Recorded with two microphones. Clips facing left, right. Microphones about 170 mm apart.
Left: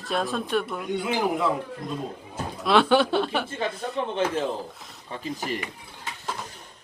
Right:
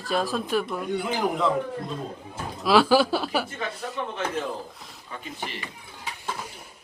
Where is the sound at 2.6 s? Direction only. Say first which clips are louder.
Right 1 dB; centre (ahead or behind).